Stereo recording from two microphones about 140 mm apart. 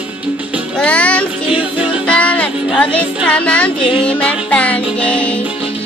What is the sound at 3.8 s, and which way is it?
Music, 40° left (ahead or behind).